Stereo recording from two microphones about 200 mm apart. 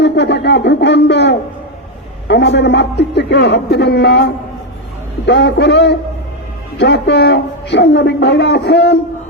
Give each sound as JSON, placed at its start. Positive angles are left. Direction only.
{"t": 0.0, "sound": "a woman's voice", "side_deg": 60}